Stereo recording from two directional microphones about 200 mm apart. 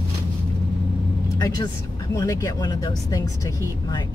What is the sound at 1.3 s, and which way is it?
Speech, 20° left (ahead or behind).